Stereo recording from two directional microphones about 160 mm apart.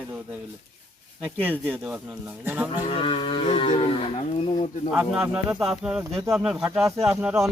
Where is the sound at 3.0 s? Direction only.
35° left (ahead or behind).